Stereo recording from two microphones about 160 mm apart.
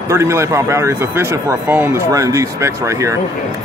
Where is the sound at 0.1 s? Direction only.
15° right (ahead or behind).